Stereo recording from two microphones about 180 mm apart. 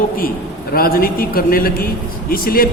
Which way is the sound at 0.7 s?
55° left (ahead or behind).